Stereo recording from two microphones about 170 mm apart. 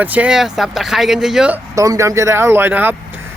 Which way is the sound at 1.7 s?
20° right (ahead or behind).